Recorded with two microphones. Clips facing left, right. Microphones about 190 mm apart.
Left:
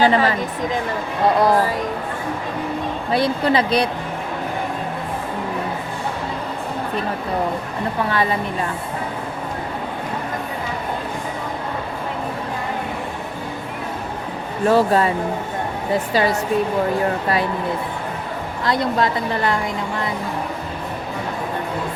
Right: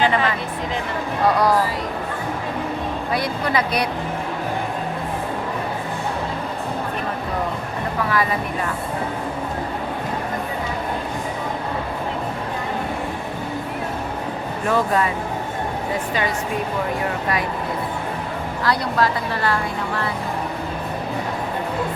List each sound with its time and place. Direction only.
0.0 s speech: 35° left (ahead or behind)
3.1 s a woman's voice: 30° left (ahead or behind)
8.1 s a woman's voice: 30° left (ahead or behind)
14.7 s speech: 30° left (ahead or behind)
18.6 s a woman's voice: 20° left (ahead or behind)